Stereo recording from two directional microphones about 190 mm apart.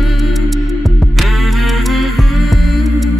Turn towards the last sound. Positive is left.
turn(degrees=0)  # may be behind; listen again after turning